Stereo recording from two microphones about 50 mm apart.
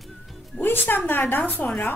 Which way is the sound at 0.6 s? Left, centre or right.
Left.